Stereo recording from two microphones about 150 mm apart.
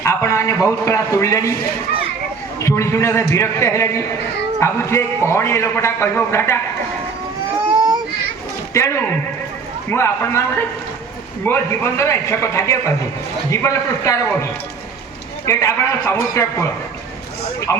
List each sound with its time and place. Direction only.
0.0 s a man's voice: 20° left (ahead or behind)
2.6 s a man's voice: 20° left (ahead or behind)
8.7 s a man's voice: 20° left (ahead or behind)
11.4 s a man's voice: 20° left (ahead or behind)
15.4 s a man's voice: 20° left (ahead or behind)
17.7 s speech: 15° left (ahead or behind)